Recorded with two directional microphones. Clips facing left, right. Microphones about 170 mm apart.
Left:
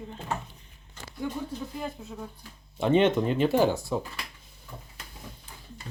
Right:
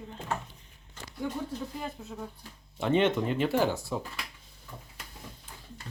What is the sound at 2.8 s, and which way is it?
Speech, 20° left (ahead or behind).